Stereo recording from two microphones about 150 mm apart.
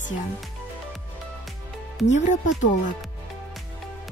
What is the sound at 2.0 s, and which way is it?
Speech, 55° left (ahead or behind).